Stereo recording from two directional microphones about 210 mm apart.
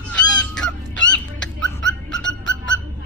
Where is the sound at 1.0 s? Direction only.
5° left (ahead or behind).